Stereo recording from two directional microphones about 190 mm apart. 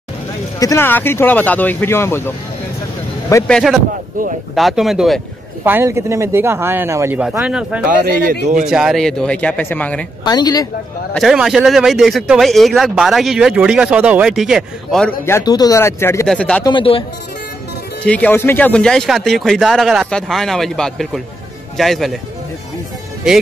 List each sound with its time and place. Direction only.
0.6 s speech: 15° left (ahead or behind)
3.4 s speech: centre (ahead or behind)
4.2 s speech: 45° right (ahead or behind)
4.6 s speech: centre (ahead or behind)
5.6 s speech: 10° right (ahead or behind)
7.9 s speech: 50° right (ahead or behind)
8.6 s speech: 5° right (ahead or behind)
10.2 s speech: 20° left (ahead or behind)
11.1 s speech: centre (ahead or behind)
16.6 s speech: 25° left (ahead or behind)
18.0 s speech: 5° left (ahead or behind)